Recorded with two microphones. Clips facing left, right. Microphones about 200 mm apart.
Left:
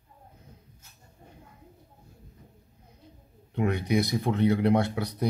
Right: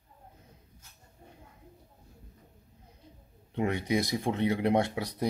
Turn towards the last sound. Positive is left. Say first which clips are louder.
# left 2 dB
turn(degrees=-20)  # may be behind; listen again after turning